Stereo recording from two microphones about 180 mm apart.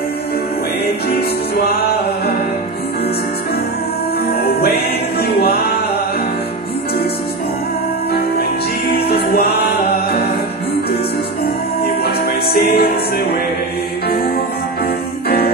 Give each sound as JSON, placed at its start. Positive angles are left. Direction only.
{"t": 4.3, "sound": "music", "side_deg": 60}
{"t": 8.1, "sound": "music", "side_deg": 60}
{"t": 11.4, "sound": "music", "side_deg": 60}
{"t": 15.2, "sound": "music", "side_deg": 60}